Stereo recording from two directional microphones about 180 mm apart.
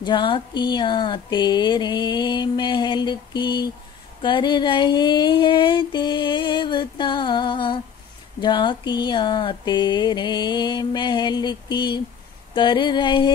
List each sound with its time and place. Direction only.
0.0 s speech: 25° left (ahead or behind)